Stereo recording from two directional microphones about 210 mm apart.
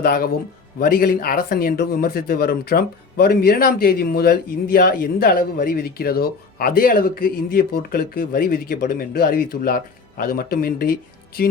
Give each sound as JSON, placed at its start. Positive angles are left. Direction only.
{"t": 0.0, "sound": "speech", "side_deg": 45}